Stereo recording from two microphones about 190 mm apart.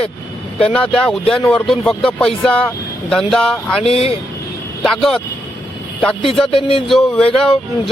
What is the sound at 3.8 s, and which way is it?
Speech, 30° left (ahead or behind).